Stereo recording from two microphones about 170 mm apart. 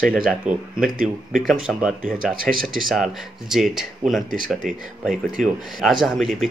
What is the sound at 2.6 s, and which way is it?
Speech, centre (ahead or behind).